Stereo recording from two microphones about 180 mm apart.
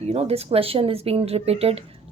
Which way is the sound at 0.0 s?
35° right (ahead or behind).